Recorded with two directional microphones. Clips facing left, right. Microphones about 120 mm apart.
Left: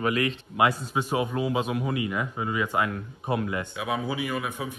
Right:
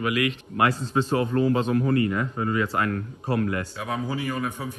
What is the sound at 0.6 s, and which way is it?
A man's voice, 15° left (ahead or behind).